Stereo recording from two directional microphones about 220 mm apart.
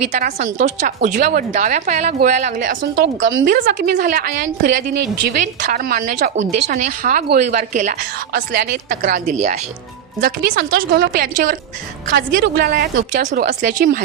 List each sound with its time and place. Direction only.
0.1 s a woman's voice: 40° right (ahead or behind)
2.9 s a woman's voice: 55° right (ahead or behind); by 8.4 s 35° right (ahead or behind)
8.4 s a woman's voice: 45° right (ahead or behind)